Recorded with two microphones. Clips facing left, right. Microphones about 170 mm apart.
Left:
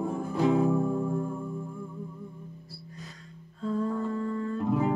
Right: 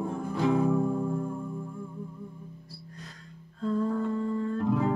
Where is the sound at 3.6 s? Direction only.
Centre (ahead or behind).